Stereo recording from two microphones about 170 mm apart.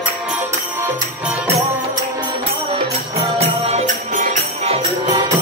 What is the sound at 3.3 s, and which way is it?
Music, 40° right (ahead or behind).